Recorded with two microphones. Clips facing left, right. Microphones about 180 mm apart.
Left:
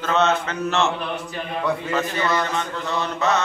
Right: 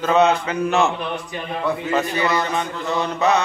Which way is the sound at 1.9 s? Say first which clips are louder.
Right 2 dB; 15° right (ahead or behind).